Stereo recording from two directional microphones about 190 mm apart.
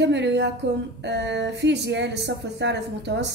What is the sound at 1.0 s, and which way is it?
Speech, 65° right (ahead or behind).